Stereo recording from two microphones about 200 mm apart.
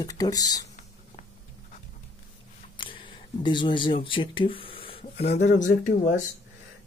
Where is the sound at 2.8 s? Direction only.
25° left (ahead or behind); by 6.1 s 40° left (ahead or behind).